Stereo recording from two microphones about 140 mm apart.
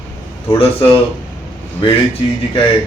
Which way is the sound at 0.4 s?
40° left (ahead or behind).